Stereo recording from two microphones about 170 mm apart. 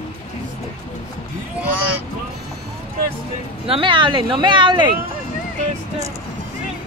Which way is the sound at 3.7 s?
30° right (ahead or behind).